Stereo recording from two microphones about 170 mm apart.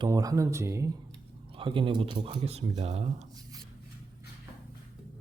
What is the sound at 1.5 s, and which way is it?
Speech, 30° right (ahead or behind).